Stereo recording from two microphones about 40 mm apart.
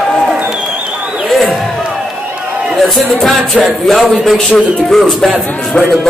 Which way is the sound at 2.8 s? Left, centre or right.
Centre.